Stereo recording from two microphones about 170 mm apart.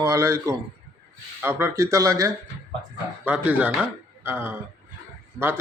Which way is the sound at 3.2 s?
10° right (ahead or behind).